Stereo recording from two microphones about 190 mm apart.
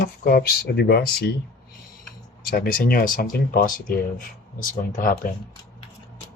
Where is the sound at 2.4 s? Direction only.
50° left (ahead or behind).